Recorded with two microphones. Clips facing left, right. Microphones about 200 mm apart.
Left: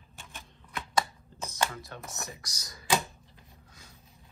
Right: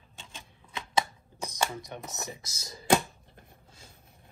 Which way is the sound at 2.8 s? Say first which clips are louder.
Right 5 dB; 55° right (ahead or behind).